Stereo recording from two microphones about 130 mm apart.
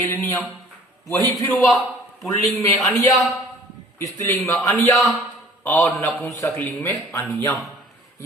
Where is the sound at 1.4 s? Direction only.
15° left (ahead or behind).